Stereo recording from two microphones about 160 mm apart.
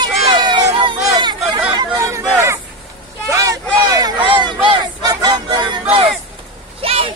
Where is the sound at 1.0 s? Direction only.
20° right (ahead or behind).